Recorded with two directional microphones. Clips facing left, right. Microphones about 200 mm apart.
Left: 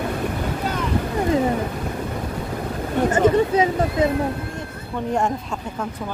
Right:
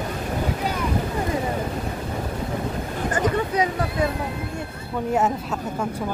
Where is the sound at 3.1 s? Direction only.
25° left (ahead or behind).